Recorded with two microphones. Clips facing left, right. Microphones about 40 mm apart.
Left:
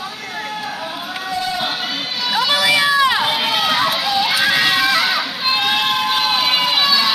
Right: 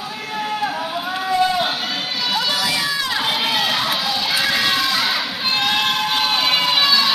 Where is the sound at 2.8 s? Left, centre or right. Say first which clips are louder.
Left 8 dB; left.